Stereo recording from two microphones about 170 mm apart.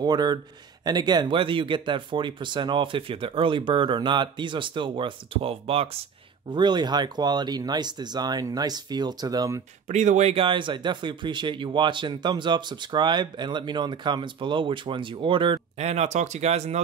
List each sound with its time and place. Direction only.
0.0 s speech: 25° right (ahead or behind)
9.8 s speech: 45° right (ahead or behind)